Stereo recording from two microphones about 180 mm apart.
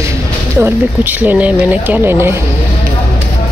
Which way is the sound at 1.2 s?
10° right (ahead or behind).